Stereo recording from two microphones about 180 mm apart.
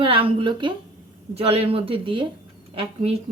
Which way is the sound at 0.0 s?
30° right (ahead or behind).